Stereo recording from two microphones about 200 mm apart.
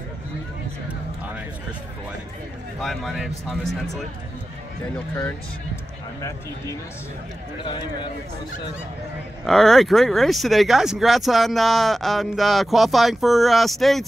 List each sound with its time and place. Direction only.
2.8 s speech: centre (ahead or behind)
7.6 s speech: 25° left (ahead or behind)
9.5 s speech: centre (ahead or behind)